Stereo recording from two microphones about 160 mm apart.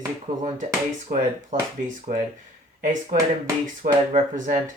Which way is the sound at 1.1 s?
60° right (ahead or behind).